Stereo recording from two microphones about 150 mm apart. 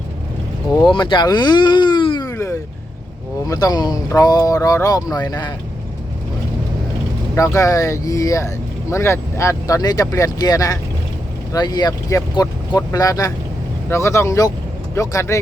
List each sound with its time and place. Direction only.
0.8 s speech: 30° left (ahead or behind)
2.3 s vehicle: 20° left (ahead or behind)
3.4 s speech: 25° left (ahead or behind)
7.3 s speech: 20° left (ahead or behind)